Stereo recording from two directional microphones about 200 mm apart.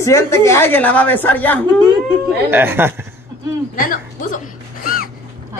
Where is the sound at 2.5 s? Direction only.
10° right (ahead or behind).